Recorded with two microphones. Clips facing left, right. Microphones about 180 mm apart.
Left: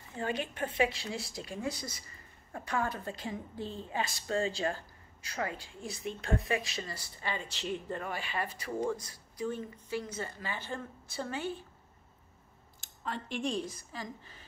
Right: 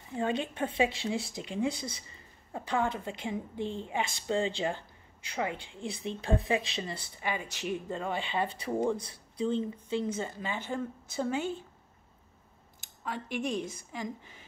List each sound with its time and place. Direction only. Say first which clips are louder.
0.1 s a woman's voice: right 4 dB; 20° right (ahead or behind)
13.0 s a woman's voice: right 1 dB; 10° right (ahead or behind)